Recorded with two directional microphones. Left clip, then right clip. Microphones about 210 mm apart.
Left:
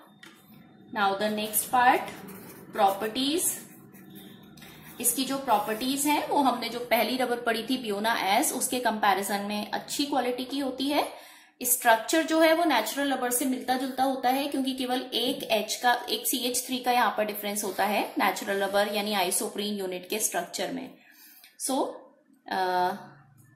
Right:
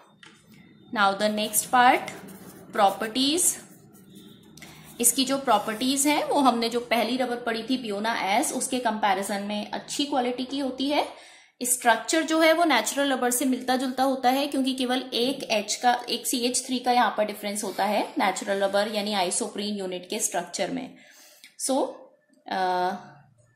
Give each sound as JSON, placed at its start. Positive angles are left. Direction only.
{"t": 0.9, "sound": "a woman's voice", "side_deg": -40}
{"t": 5.1, "sound": "a woman's voice", "side_deg": -35}
{"t": 7.0, "sound": "a woman's voice", "side_deg": -10}
{"t": 22.5, "sound": "a woman's voice", "side_deg": -25}